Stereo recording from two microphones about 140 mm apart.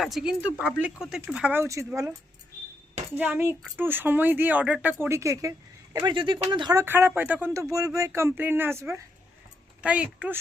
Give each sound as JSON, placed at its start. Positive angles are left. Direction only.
{"t": 0.0, "sound": "speech", "side_deg": 0}
{"t": 3.2, "sound": "speech", "side_deg": -15}
{"t": 6.1, "sound": "speech", "side_deg": -35}
{"t": 6.7, "sound": "speech", "side_deg": -15}